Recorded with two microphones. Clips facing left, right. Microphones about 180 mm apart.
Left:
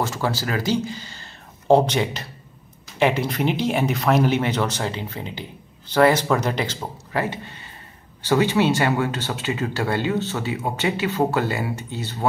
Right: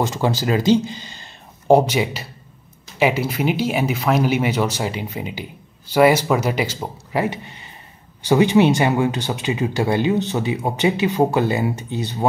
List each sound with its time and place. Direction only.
0.0 s speech: 20° right (ahead or behind)